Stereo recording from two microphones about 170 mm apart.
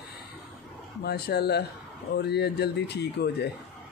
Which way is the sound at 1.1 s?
70° left (ahead or behind).